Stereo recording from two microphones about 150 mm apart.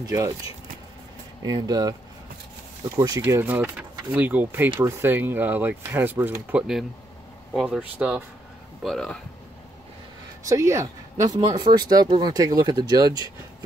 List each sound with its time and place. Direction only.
0.0 s speech: 20° right (ahead or behind)
1.4 s speech: 25° right (ahead or behind)
3.2 s speech: 15° right (ahead or behind)
6.5 s speech: centre (ahead or behind)
8.8 s speech: 5° left (ahead or behind)
10.5 s speech: 20° right (ahead or behind)